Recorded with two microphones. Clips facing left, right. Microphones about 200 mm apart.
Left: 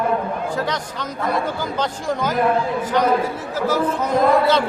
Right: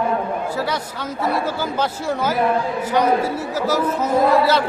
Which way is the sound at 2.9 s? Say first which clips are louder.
Right 1 dB; 10° right (ahead or behind).